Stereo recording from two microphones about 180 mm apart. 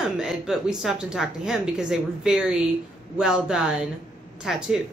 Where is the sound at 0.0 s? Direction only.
5° right (ahead or behind).